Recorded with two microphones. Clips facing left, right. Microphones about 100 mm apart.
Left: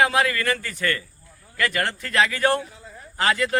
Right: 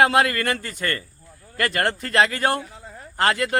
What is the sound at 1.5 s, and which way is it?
Speech, 40° right (ahead or behind).